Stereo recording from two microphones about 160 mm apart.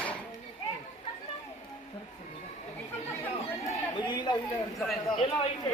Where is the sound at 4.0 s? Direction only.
25° left (ahead or behind).